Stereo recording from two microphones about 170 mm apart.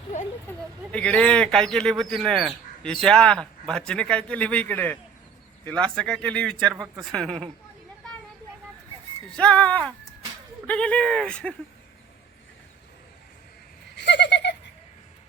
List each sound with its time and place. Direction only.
0.4 s a man's voice: 5° left (ahead or behind)
9.3 s a man's voice: 5° left (ahead or behind)
13.9 s a sound: 90° left